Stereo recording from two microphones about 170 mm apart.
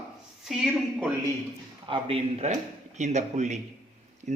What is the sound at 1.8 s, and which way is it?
Speech, 35° right (ahead or behind).